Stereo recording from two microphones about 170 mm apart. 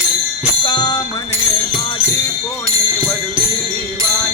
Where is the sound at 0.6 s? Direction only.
25° left (ahead or behind).